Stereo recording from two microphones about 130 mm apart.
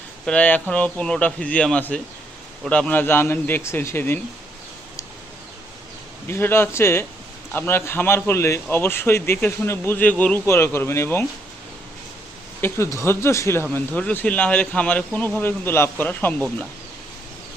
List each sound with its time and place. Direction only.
0.3 s a man's voice: 10° left (ahead or behind)
6.2 s a man's voice: 20° left (ahead or behind)
12.6 s speech: 20° left (ahead or behind)
13.7 s a man's voice: 10° left (ahead or behind)